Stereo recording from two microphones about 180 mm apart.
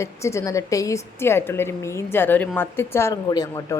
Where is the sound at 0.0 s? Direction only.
15° left (ahead or behind).